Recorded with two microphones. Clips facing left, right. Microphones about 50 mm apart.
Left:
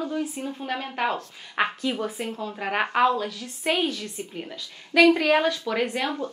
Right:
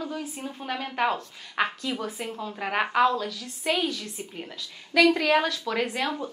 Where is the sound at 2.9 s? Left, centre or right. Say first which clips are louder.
Left 1 dB; centre.